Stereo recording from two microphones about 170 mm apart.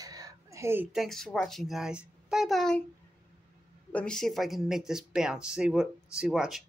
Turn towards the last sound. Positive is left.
turn(degrees=-5)  # may be behind; listen again after turning